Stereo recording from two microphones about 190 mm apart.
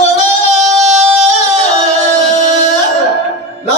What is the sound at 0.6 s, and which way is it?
Singing, 35° right (ahead or behind).